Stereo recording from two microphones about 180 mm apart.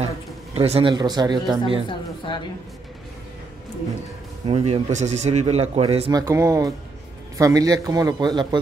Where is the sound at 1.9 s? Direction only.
25° left (ahead or behind).